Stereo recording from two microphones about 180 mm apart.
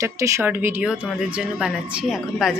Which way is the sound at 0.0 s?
15° right (ahead or behind).